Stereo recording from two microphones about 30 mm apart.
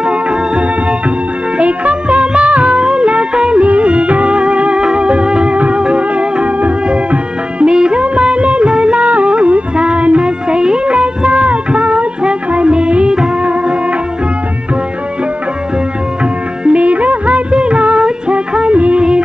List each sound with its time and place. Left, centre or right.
0.0 s music: right
1.6 s music of bollywood: right
2.5 s music: right
2.8 s music: right
3.6 s music: right
9.0 s music: right
10.2 s music: right
10.9 s music: right
12.2 s music: right
16.6 s music: right
18.8 s music of bollywood: right